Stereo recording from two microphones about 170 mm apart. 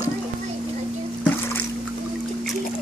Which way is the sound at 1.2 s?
10° left (ahead or behind).